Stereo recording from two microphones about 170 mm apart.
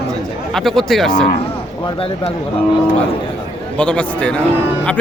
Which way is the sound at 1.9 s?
35° left (ahead or behind).